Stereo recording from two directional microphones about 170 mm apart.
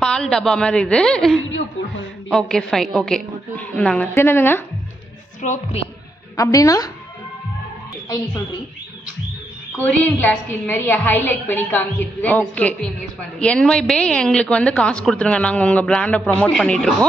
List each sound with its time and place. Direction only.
0.0 s a woman's voice: 5° left (ahead or behind)
5.4 s a woman's voice: 45° left (ahead or behind)
6.3 s a woman's voice: 20° left (ahead or behind)
9.8 s a woman's voice: 10° left (ahead or behind)